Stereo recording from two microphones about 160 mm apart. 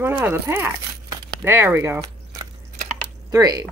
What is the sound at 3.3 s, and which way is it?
Speech, 20° right (ahead or behind).